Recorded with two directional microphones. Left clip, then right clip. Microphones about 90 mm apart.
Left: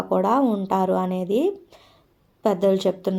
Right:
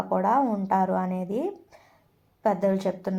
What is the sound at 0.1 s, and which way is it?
A woman's voice, 40° left (ahead or behind).